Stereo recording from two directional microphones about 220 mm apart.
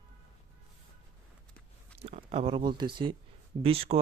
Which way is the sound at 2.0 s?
25° right (ahead or behind).